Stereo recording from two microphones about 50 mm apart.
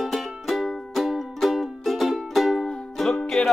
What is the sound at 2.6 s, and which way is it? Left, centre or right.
Music, centre.